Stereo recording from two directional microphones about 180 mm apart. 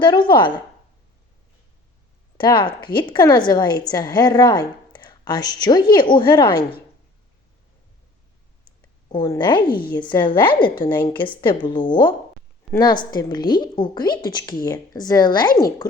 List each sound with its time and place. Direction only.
0.0 s a woman's voice: 25° left (ahead or behind)
2.4 s a woman's voice: 25° left (ahead or behind)
9.1 s a woman's voice: 20° left (ahead or behind)